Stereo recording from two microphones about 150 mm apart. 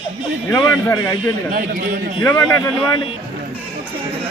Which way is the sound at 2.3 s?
25° left (ahead or behind).